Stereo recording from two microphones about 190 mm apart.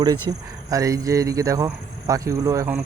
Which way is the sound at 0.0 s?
20° right (ahead or behind).